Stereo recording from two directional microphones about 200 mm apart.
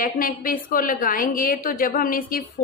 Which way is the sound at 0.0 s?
45° left (ahead or behind).